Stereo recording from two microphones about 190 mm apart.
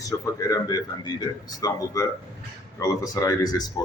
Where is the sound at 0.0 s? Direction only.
20° left (ahead or behind).